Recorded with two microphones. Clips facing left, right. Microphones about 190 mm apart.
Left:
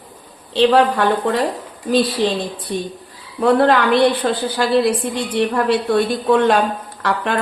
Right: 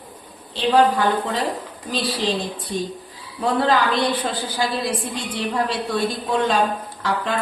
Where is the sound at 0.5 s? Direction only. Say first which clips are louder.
Left 4 dB; 70° left (ahead or behind).